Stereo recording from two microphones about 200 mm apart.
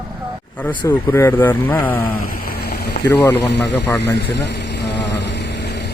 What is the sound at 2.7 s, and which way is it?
Speech, 55° left (ahead or behind).